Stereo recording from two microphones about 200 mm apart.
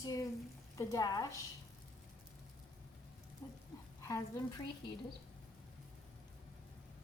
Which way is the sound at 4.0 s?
15° left (ahead or behind).